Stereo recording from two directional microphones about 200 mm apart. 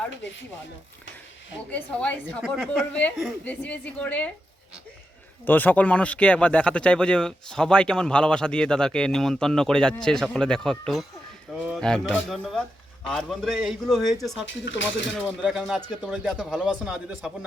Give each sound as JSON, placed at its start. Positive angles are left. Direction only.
{"t": 0.2, "sound": "speech", "side_deg": 65}
{"t": 1.7, "sound": "a woman's voice", "side_deg": 5}
{"t": 5.5, "sound": "speech", "side_deg": 10}
{"t": 14.4, "sound": "speech", "side_deg": 70}
{"t": 15.4, "sound": "speech", "side_deg": 0}